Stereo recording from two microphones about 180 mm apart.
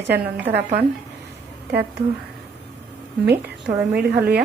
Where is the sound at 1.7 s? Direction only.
60° right (ahead or behind).